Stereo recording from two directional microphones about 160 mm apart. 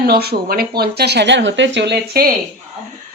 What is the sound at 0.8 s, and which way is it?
Speech, 85° right.